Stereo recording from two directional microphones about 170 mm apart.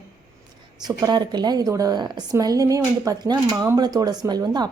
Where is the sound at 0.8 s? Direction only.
20° right (ahead or behind).